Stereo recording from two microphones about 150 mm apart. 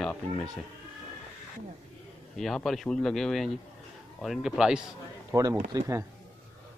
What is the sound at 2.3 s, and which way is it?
Speech, centre (ahead or behind).